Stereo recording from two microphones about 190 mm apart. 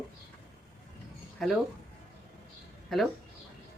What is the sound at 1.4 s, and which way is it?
Speech, centre (ahead or behind).